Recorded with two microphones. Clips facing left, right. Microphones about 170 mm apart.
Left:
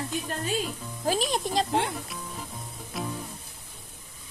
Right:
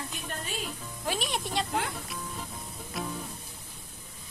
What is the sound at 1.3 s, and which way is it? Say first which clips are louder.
Speech: left 5 dB; 35° left (ahead or behind).